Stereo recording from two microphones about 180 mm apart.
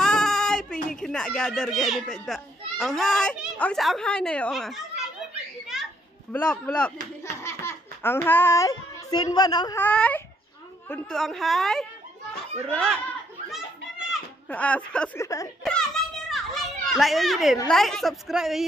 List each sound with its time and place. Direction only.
0.0 s a sound: 5° left (ahead or behind)
0.8 s a child's voice: 5° left (ahead or behind)
6.3 s a child's voice: 5° left (ahead or behind)
7.2 s baby laughter: 15° left (ahead or behind)
9.8 s a child's voice: 10° left (ahead or behind)
13.5 s children playing: 5° right (ahead or behind)
14.5 s speech: 5° left (ahead or behind)
15.2 s speech: 20° left (ahead or behind)
15.6 s children playing: centre (ahead or behind)
17.6 s a child's voice: centre (ahead or behind)